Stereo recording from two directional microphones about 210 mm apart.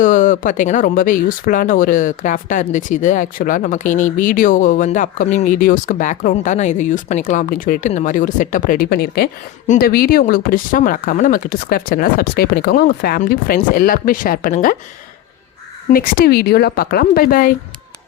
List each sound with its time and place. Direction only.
0.0 s speech: 40° left (ahead or behind)
15.9 s speech: 45° left (ahead or behind)